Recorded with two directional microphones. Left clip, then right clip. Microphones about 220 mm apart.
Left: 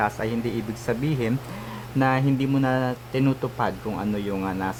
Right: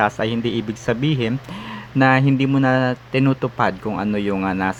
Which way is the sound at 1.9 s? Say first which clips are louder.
Right 7 dB; 15° right (ahead or behind).